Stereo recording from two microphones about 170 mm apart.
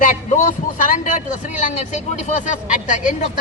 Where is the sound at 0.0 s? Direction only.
45° left (ahead or behind).